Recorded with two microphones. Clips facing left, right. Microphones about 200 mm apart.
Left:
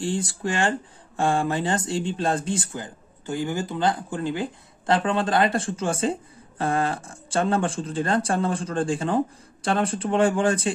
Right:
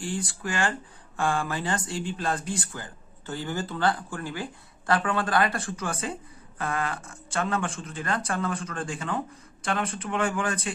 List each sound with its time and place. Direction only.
0.0 s speech: 25° left (ahead or behind)